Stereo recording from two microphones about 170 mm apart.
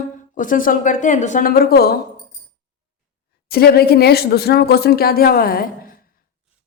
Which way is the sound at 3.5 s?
65° left (ahead or behind).